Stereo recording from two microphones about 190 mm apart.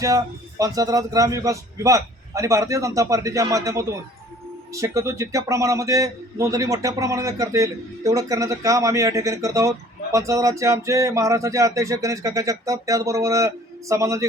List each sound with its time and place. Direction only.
0.6 s a man's voice: 20° right (ahead or behind)